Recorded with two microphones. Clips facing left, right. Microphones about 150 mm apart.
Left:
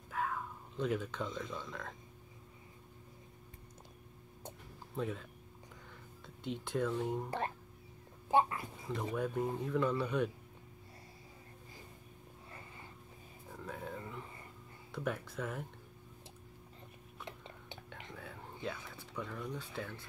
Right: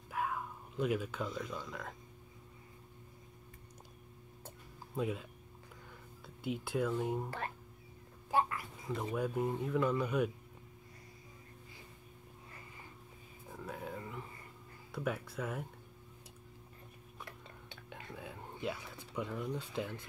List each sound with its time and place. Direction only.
0.1 s speech: 10° right (ahead or behind)
4.9 s speech: 10° right (ahead or behind)
7.2 s a child's voice: 20° left (ahead or behind)
8.9 s speech: 5° right (ahead or behind)
13.5 s speech: 5° right (ahead or behind)
18.1 s speech: 10° right (ahead or behind)